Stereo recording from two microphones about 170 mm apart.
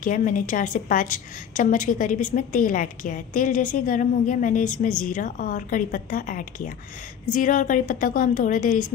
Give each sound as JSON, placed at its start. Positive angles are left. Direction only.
{"t": 0.0, "sound": "a woman's voice", "side_deg": 50}